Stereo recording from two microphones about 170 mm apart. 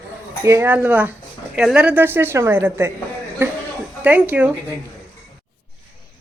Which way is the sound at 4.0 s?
10° right (ahead or behind).